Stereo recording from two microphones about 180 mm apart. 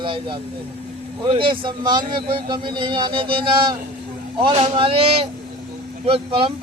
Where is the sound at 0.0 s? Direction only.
30° right (ahead or behind).